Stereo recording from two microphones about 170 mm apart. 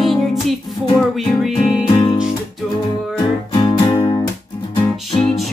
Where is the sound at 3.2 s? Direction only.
25° left (ahead or behind).